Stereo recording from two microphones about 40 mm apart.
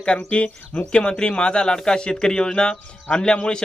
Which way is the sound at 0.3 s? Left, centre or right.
Left.